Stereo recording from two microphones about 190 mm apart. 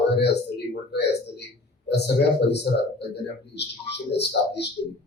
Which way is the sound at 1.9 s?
60° left (ahead or behind).